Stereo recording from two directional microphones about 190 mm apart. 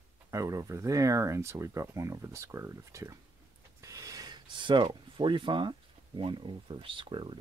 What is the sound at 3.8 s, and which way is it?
Pulleys, 15° right (ahead or behind).